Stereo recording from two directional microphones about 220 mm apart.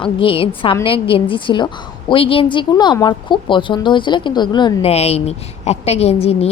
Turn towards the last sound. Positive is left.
turn(degrees=25)  # may be behind; listen again after turning